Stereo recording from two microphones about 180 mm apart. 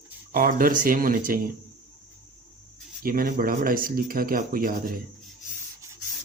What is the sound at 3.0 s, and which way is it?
Speech, 55° right (ahead or behind).